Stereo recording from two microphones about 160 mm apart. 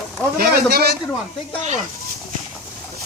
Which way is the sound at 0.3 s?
75° right (ahead or behind).